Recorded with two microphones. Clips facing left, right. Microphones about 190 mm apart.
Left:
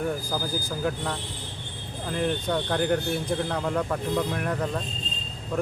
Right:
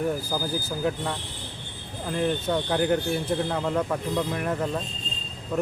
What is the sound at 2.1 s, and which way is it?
Speech, centre (ahead or behind).